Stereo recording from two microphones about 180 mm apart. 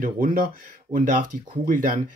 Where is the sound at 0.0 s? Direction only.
50° right (ahead or behind).